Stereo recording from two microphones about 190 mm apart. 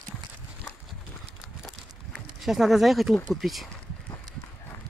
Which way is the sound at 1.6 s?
Centre (ahead or behind).